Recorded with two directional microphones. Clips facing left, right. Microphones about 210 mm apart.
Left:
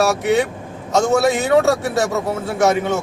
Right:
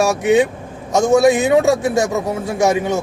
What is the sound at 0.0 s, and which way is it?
A man's voice, 15° right (ahead or behind).